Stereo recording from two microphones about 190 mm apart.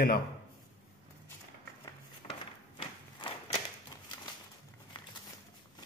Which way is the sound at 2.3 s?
30° left (ahead or behind).